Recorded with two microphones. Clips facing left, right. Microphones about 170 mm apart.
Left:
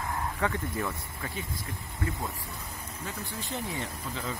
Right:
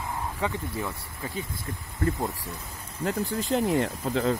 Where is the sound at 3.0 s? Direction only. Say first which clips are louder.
Right 12 dB; 90° right.